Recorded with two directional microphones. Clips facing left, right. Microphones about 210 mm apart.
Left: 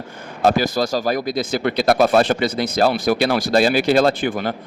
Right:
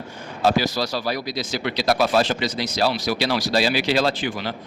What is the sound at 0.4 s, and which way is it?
Speech, 50° left (ahead or behind).